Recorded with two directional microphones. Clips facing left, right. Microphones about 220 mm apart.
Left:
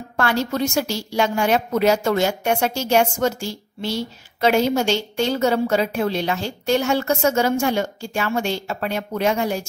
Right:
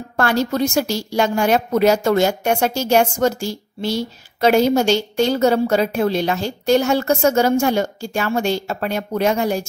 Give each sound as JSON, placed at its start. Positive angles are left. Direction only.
{"t": 0.2, "sound": "a woman's voice", "side_deg": -40}